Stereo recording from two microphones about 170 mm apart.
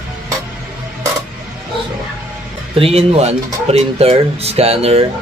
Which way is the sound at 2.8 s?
35° right (ahead or behind).